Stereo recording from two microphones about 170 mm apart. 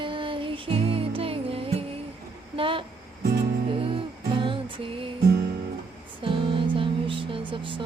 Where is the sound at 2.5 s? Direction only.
30° right (ahead or behind).